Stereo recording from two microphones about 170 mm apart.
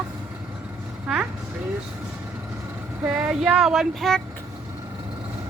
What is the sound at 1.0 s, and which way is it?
Speech, 10° right (ahead or behind).